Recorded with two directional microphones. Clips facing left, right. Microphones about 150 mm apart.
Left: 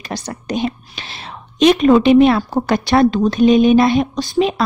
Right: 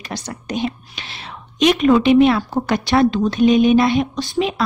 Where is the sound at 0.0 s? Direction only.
35° left (ahead or behind).